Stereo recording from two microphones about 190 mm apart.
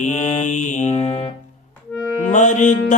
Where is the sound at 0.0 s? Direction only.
40° left (ahead or behind).